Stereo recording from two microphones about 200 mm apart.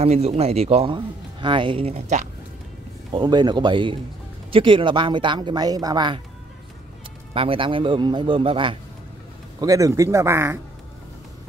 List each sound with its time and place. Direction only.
0.0 s speech: 30° right (ahead or behind)
3.1 s speech: 20° right (ahead or behind)
7.3 s a man's voice: 25° right (ahead or behind)